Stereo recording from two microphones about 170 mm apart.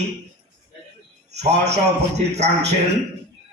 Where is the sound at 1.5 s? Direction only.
40° right (ahead or behind).